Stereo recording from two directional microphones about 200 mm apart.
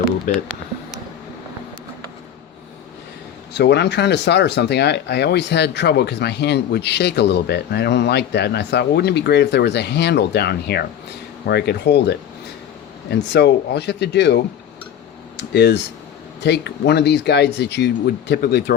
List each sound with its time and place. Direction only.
0.3 s speech: 40° left (ahead or behind)
3.5 s speech: 55° left (ahead or behind)